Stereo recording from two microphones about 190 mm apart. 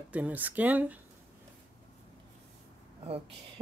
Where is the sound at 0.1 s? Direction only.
10° right (ahead or behind).